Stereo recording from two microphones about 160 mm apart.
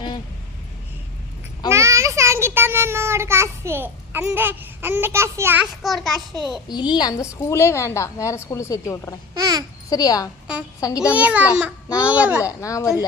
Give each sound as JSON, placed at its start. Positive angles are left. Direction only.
{"t": 1.7, "sound": "a child's voice", "side_deg": -20}
{"t": 5.8, "sound": "a child's voice", "side_deg": 0}
{"t": 6.7, "sound": "a woman's voice", "side_deg": 25}
{"t": 9.4, "sound": "babbling", "side_deg": -20}
{"t": 9.9, "sound": "a woman's voice", "side_deg": 20}
{"t": 11.1, "sound": "a child's voice", "side_deg": -10}
{"t": 12.4, "sound": "a woman's voice", "side_deg": 20}